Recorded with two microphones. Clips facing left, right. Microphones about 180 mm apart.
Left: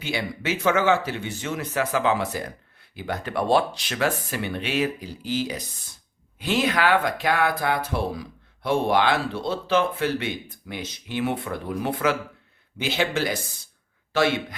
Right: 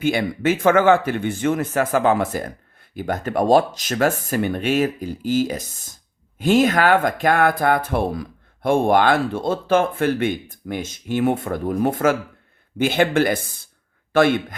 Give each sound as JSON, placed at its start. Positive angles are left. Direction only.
{"t": 0.0, "sound": "speech", "side_deg": -50}